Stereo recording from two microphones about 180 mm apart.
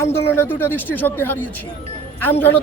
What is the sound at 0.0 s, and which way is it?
Speech, 15° left (ahead or behind).